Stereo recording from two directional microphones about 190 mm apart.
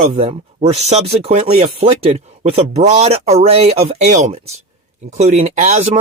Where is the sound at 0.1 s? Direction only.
30° right (ahead or behind).